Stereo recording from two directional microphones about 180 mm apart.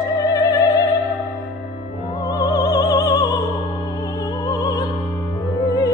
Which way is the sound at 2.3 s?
20° left (ahead or behind).